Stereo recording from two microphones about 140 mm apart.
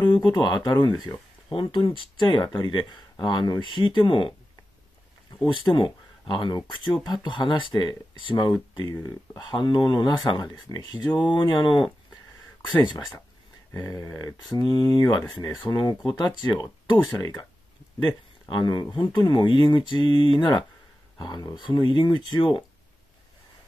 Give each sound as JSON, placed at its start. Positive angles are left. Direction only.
{"t": 0.0, "sound": "speech", "side_deg": 30}
{"t": 5.5, "sound": "speech", "side_deg": 35}
{"t": 16.5, "sound": "speech", "side_deg": 20}
{"t": 18.5, "sound": "speech", "side_deg": 30}